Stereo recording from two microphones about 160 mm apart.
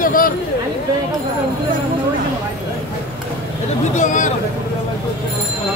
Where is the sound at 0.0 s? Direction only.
60° left (ahead or behind).